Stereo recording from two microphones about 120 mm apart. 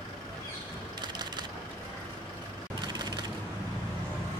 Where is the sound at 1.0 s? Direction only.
35° right (ahead or behind).